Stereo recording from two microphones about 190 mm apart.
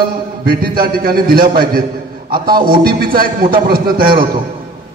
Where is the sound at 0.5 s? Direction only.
50° right (ahead or behind).